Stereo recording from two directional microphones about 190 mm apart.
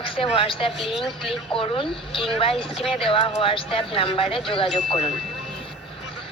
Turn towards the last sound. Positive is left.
turn(degrees=35)  # may be behind; listen again after turning